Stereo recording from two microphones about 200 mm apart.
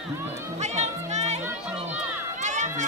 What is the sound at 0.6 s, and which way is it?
Music, 35° right (ahead or behind).